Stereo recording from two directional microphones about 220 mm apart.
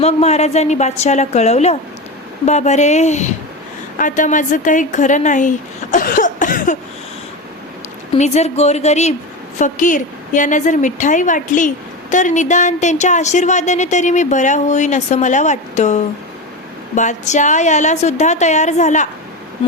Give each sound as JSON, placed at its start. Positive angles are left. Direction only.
{"t": 0.0, "sound": "a woman's voice", "side_deg": 30}
{"t": 8.1, "sound": "speech", "side_deg": 30}